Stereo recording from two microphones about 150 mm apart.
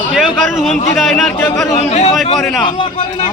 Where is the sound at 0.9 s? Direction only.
Centre (ahead or behind).